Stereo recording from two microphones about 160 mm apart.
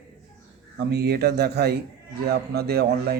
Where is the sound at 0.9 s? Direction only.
90° right.